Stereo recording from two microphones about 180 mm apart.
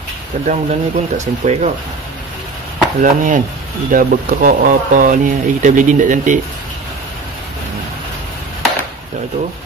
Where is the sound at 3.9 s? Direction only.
45° right (ahead or behind).